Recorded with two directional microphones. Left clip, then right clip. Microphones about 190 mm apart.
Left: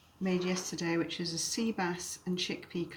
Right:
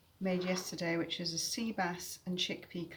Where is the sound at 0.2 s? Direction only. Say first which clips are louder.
Left 2 dB; 35° right (ahead or behind).